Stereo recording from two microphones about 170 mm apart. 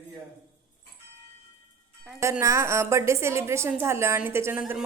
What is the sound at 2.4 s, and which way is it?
A woman's voice, 15° right (ahead or behind).